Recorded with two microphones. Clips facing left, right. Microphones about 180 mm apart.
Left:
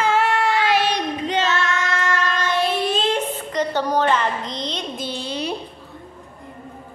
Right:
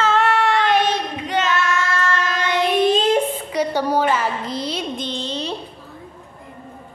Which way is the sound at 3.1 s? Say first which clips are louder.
Right 4 dB; 10° right (ahead or behind).